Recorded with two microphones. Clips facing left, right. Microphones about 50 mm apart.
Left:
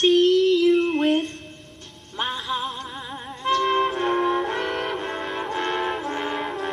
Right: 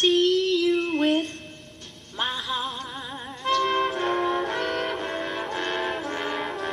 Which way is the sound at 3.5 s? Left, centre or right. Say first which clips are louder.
Left 2 dB; left.